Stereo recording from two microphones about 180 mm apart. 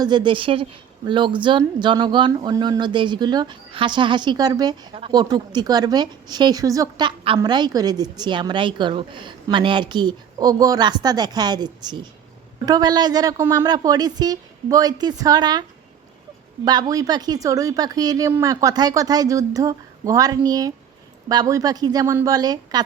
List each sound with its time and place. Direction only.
0.0 s a woman's voice: 25° right (ahead or behind)
16.6 s a woman's voice: 20° right (ahead or behind)